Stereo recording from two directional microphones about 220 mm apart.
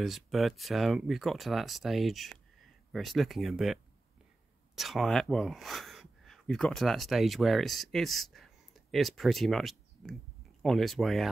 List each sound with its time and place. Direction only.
0.0 s speech: centre (ahead or behind)